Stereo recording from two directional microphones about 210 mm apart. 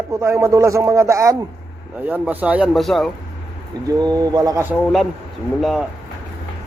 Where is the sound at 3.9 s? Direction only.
20° right (ahead or behind).